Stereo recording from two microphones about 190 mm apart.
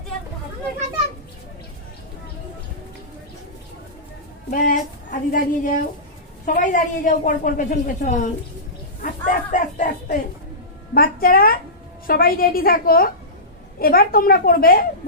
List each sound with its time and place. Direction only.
4.5 s a woman's voice: 45° left (ahead or behind)